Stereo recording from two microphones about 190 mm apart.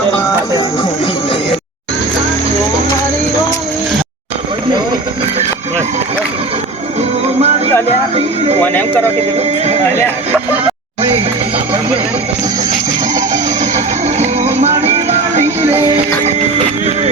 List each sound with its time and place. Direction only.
7.3 s music: 35° right (ahead or behind)
8.6 s speech: 10° left (ahead or behind)
13.3 s music: 35° right (ahead or behind)